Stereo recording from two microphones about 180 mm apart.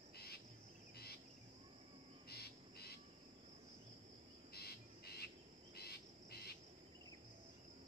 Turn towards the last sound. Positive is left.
turn(degrees=60)  # may be behind; listen again after turning